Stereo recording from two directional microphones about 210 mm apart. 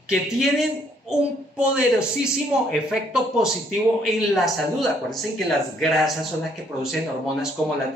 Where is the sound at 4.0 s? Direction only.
Centre (ahead or behind).